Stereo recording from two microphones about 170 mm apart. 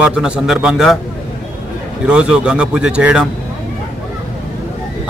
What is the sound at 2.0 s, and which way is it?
A man's voice, 5° right (ahead or behind).